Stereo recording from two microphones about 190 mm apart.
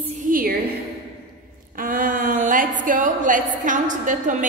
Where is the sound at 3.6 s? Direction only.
40° right (ahead or behind).